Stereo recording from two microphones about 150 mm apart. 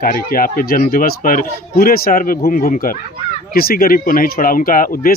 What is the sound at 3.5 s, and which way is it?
Speech, 80° left.